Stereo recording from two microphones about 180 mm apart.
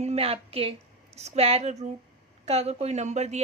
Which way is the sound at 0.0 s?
35° right (ahead or behind).